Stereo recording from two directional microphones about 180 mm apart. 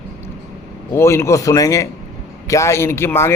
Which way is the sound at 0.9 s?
15° left (ahead or behind).